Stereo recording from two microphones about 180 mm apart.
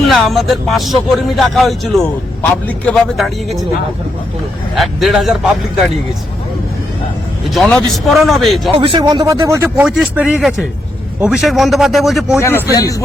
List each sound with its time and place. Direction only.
0.1 s speech: centre (ahead or behind)
4.7 s speech: centre (ahead or behind)
7.5 s speech: 5° left (ahead or behind)
8.7 s speech: 30° right (ahead or behind); by 12.4 s centre (ahead or behind)
12.4 s speech: 15° left (ahead or behind)